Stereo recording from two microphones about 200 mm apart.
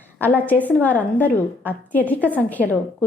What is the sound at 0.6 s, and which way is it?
A woman's voice, 10° left (ahead or behind).